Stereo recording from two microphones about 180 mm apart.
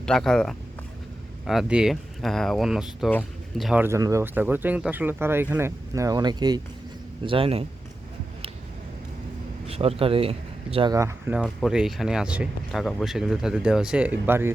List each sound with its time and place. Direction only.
0.0 s speech: 5° left (ahead or behind)
3.1 s speech: 10° left (ahead or behind)
3.7 s speech: 10° right (ahead or behind); by 7.6 s 30° right (ahead or behind)
9.6 s speech: 35° right (ahead or behind)
10.9 s speech: 15° right (ahead or behind)
11.3 s speech: 5° right (ahead or behind)